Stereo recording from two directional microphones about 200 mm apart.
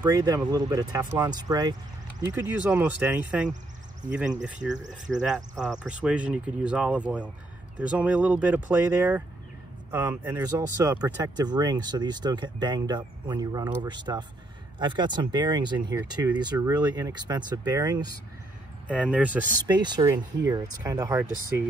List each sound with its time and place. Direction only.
0.2 s speech: 20° right (ahead or behind)
2.6 s speech: 10° right (ahead or behind)
18.9 s speech: 5° right (ahead or behind)
19.7 s speech: 20° right (ahead or behind)